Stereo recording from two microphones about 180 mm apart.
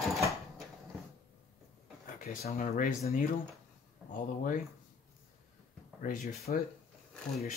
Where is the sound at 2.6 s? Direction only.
50° left (ahead or behind).